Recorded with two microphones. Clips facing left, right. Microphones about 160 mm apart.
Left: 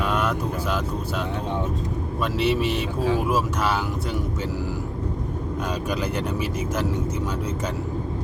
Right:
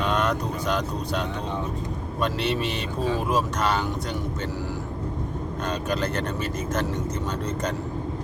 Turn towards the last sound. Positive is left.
turn(degrees=10)  # may be behind; listen again after turning